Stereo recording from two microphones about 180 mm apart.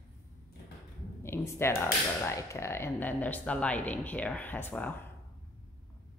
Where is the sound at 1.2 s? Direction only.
15° left (ahead or behind).